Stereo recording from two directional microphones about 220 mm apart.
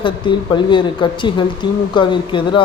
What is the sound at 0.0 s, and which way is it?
A man's voice, 20° left (ahead or behind).